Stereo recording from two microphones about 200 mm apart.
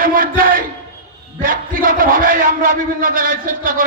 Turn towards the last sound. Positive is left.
turn(degrees=-45)  # may be behind; listen again after turning